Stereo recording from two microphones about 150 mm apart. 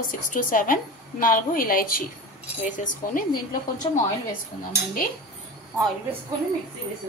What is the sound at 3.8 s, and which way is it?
Speech, 35° left (ahead or behind).